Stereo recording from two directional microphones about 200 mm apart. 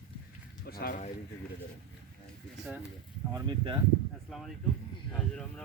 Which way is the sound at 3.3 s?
25° right (ahead or behind).